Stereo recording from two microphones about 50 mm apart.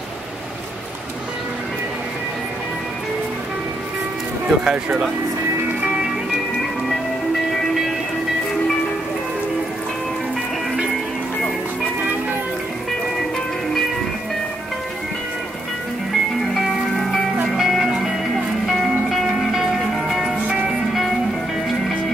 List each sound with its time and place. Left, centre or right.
4.5 s speech: centre
16.5 s music: centre
17.6 s music: centre